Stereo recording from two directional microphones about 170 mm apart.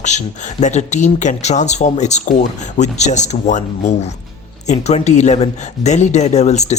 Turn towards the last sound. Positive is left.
turn(degrees=40)  # may be behind; listen again after turning